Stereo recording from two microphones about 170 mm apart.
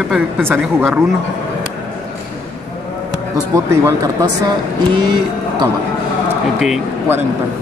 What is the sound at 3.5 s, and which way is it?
Speech, 20° right (ahead or behind).